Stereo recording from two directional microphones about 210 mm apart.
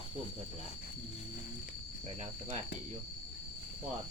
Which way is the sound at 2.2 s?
35° right (ahead or behind).